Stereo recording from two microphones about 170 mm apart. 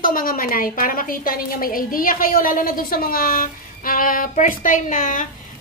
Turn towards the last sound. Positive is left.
turn(degrees=50)  # may be behind; listen again after turning